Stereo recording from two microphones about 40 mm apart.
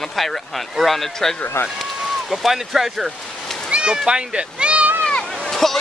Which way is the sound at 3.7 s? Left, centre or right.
Right.